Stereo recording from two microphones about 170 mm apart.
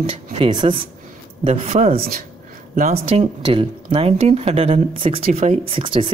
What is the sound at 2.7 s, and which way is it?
Speech, 45° right (ahead or behind).